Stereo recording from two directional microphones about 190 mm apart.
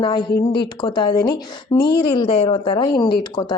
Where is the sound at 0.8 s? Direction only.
25° left (ahead or behind).